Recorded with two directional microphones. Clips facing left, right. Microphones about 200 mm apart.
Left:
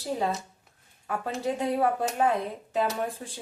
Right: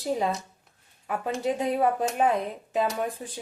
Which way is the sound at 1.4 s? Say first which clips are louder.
Right 1 dB; 20° right (ahead or behind).